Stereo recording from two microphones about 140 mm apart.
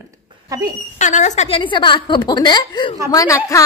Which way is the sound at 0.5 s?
25° right (ahead or behind).